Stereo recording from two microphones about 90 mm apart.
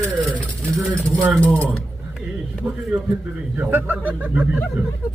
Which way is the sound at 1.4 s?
15° left (ahead or behind).